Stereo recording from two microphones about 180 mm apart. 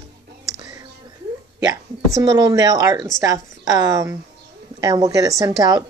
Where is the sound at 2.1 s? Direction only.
20° right (ahead or behind).